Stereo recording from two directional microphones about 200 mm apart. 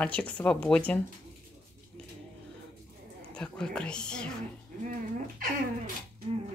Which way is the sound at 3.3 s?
5° left (ahead or behind).